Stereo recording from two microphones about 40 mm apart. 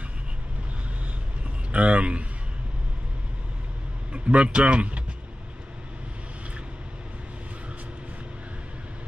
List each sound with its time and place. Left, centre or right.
1.7 s speech: right
4.1 s speech: right